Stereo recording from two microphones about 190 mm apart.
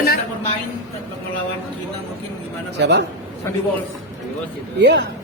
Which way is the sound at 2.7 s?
65° right (ahead or behind).